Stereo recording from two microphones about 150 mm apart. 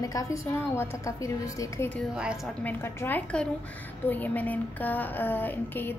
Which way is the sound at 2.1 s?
5° right (ahead or behind).